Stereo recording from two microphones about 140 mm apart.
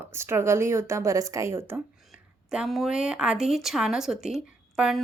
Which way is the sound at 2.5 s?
5° right (ahead or behind).